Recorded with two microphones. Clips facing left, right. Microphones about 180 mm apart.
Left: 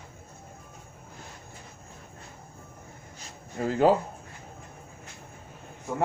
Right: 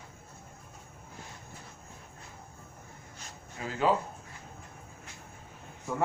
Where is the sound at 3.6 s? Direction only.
50° left (ahead or behind).